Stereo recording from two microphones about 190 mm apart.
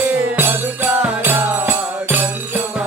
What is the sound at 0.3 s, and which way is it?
Music, 10° right (ahead or behind).